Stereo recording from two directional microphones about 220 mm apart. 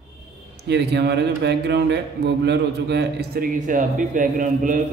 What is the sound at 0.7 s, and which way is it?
A man's voice, 50° right (ahead or behind).